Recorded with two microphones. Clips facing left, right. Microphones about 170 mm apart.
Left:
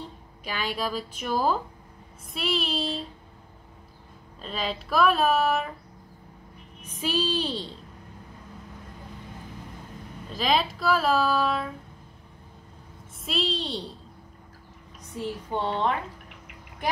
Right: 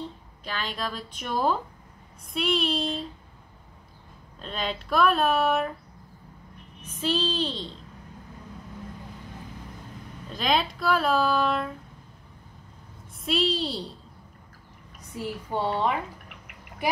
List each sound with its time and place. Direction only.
0.4 s a woman's voice: 10° left (ahead or behind)
4.4 s speech: centre (ahead or behind)
6.8 s a woman's voice: 10° left (ahead or behind)
10.3 s speech: centre (ahead or behind)
13.2 s speech: centre (ahead or behind)
15.5 s speech: 10° right (ahead or behind)